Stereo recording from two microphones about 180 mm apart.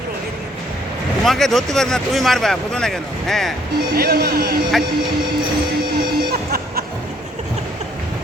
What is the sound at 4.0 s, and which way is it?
Speech, 60° right (ahead or behind).